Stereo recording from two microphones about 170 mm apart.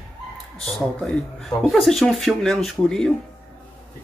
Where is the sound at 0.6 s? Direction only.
5° left (ahead or behind).